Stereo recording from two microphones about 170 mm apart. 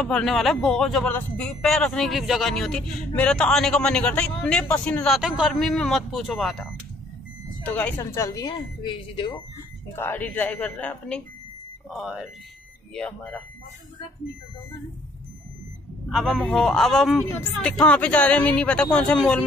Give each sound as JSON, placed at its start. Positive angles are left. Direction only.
{"t": 0.0, "sound": "speech", "side_deg": 0}
{"t": 7.6, "sound": "a woman's voice", "side_deg": 10}
{"t": 9.9, "sound": "speech", "side_deg": 10}
{"t": 16.1, "sound": "speech", "side_deg": 0}